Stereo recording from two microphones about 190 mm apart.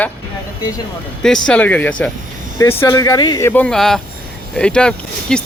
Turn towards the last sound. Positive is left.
turn(degrees=5)  # may be behind; listen again after turning